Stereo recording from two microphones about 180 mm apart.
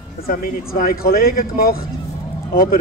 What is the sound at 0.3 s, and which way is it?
Speech, 50° left (ahead or behind).